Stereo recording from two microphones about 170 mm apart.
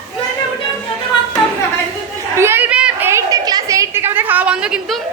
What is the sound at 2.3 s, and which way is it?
A woman's voice, 15° right (ahead or behind).